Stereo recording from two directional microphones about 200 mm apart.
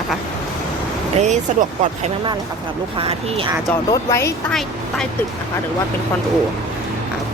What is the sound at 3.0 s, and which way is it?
Speech, 30° right (ahead or behind).